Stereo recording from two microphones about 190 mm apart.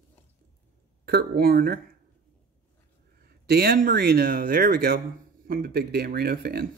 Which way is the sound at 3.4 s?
55° right (ahead or behind).